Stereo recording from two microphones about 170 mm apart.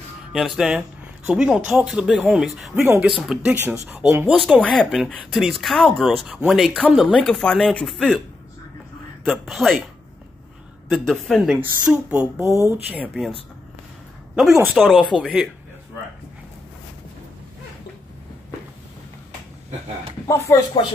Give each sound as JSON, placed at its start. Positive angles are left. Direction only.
{"t": 0.3, "sound": "speech", "side_deg": 0}
{"t": 2.8, "sound": "speech", "side_deg": -15}
{"t": 4.5, "sound": "speech", "side_deg": 0}
{"t": 9.3, "sound": "speech", "side_deg": 0}
{"t": 10.9, "sound": "speech", "side_deg": 0}
{"t": 12.4, "sound": "speech", "side_deg": -20}
{"t": 14.8, "sound": "speech", "side_deg": 0}
{"t": 20.2, "sound": "speech", "side_deg": 15}